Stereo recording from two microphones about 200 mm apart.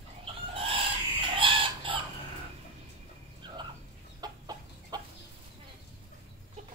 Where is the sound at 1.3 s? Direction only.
25° right (ahead or behind).